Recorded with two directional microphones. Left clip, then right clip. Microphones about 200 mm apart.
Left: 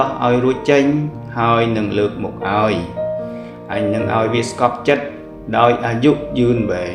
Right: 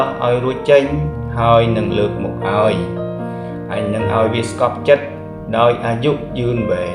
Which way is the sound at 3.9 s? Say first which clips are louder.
Right 2 dB; 35° left (ahead or behind).